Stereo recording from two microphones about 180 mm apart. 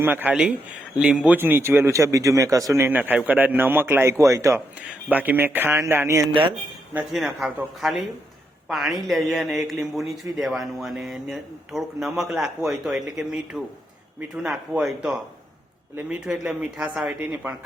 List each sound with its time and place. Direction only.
0.0 s a man's voice: 10° right (ahead or behind)
6.9 s speech: centre (ahead or behind)